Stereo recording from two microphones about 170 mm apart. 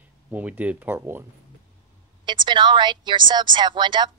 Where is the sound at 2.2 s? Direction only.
25° right (ahead or behind).